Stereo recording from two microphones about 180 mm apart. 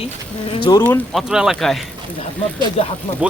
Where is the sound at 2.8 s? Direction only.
35° left (ahead or behind).